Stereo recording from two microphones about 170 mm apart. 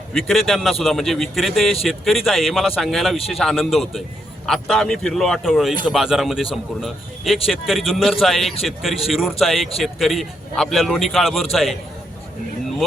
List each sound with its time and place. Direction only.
0.1 s a man's voice: centre (ahead or behind)